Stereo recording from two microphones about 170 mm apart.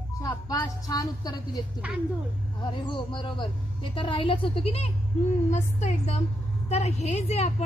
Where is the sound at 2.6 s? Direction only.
30° left (ahead or behind).